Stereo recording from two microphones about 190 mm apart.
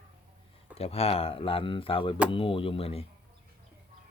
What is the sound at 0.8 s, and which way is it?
Speech, 30° left (ahead or behind).